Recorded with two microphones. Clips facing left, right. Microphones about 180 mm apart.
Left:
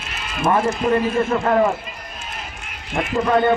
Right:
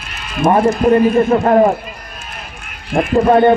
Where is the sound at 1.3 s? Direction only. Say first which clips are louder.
Right 7 dB; 45° right (ahead or behind).